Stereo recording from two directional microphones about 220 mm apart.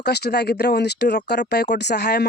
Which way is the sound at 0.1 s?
45° left (ahead or behind).